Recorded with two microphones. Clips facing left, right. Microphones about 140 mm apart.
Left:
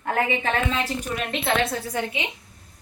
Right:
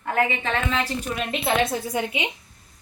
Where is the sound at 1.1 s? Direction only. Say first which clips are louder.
Right 1 dB; 5° right (ahead or behind).